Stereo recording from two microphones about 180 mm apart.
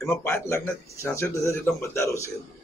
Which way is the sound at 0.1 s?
15° left (ahead or behind).